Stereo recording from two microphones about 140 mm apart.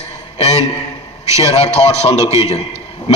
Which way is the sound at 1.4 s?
50° left (ahead or behind).